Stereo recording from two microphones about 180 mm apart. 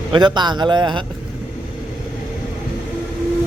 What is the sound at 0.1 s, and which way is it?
Speech, 25° right (ahead or behind).